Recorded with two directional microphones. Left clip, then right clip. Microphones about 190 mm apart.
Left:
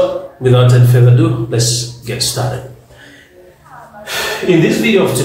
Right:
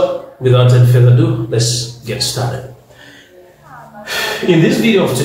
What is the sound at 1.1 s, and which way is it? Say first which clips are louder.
Speech: left 1 dB; 15° left (ahead or behind).